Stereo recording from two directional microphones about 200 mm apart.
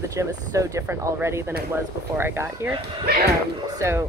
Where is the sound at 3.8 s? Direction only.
15° right (ahead or behind).